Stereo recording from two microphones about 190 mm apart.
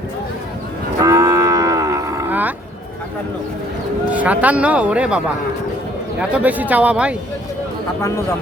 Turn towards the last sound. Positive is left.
turn(degrees=-5)  # may be behind; listen again after turning